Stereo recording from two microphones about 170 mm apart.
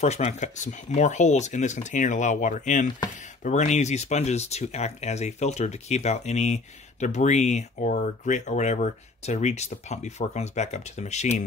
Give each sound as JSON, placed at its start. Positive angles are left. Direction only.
{"t": 0.0, "sound": "speech", "side_deg": 40}